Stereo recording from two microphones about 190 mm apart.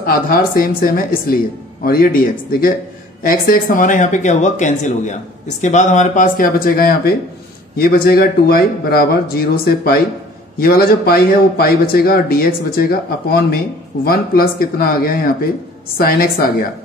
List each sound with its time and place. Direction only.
0.0 s a man's voice: 50° left (ahead or behind)